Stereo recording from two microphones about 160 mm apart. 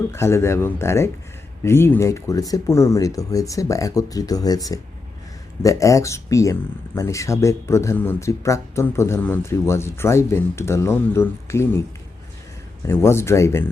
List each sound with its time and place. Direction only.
0.1 s speech: 15° left (ahead or behind)
12.8 s speech: 15° left (ahead or behind)